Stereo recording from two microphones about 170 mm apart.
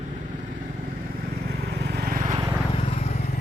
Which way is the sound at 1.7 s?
75° right (ahead or behind).